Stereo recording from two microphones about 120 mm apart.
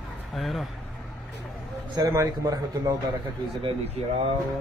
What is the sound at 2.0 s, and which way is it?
Speech, 30° right (ahead or behind).